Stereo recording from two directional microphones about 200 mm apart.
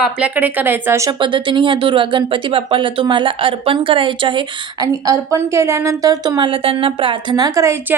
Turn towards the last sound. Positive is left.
turn(degrees=-15)  # may be behind; listen again after turning